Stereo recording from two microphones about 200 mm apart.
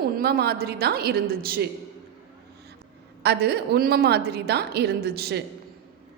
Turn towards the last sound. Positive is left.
turn(degrees=-50)  # may be behind; listen again after turning